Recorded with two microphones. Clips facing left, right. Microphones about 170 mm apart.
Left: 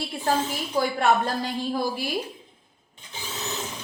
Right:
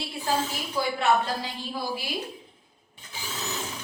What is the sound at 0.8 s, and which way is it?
Speech, 50° left (ahead or behind).